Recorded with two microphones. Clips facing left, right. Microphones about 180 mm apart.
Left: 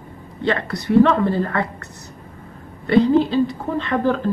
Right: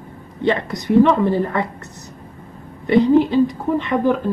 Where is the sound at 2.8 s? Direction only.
15° right (ahead or behind).